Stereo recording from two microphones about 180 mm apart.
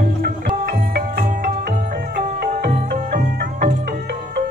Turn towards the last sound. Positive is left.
turn(degrees=-50)  # may be behind; listen again after turning